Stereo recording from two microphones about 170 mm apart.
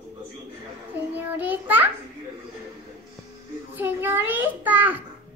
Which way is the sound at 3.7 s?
10° right (ahead or behind).